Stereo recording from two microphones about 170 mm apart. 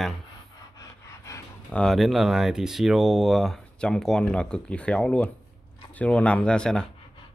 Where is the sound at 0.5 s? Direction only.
20° left (ahead or behind).